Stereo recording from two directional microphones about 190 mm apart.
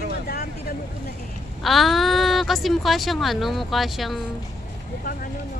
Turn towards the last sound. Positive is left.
turn(degrees=0)  # may be behind; listen again after turning